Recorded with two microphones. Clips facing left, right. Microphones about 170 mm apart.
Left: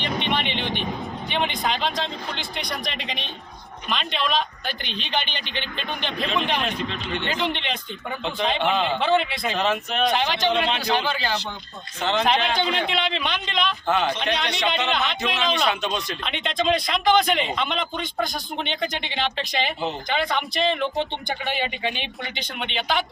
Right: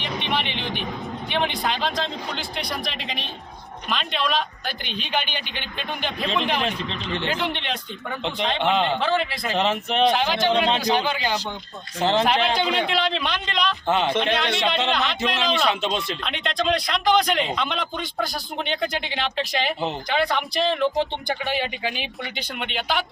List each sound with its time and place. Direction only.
0.0 s vehicle: centre (ahead or behind)
1.3 s speech: centre (ahead or behind)
9.6 s speech: 25° right (ahead or behind)
10.1 s speech: 5° right (ahead or behind)
11.9 s speech: 35° right (ahead or behind)
12.2 s speech: centre (ahead or behind)
13.8 s speech: 25° right (ahead or behind)
14.3 s speech: centre (ahead or behind)
15.7 s speech: 25° right (ahead or behind)
16.2 s speech: centre (ahead or behind)